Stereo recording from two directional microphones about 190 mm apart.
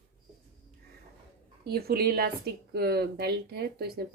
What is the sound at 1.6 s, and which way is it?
A woman's voice, 55° right (ahead or behind).